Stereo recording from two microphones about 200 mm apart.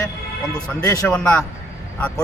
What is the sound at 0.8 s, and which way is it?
Speech, 15° left (ahead or behind).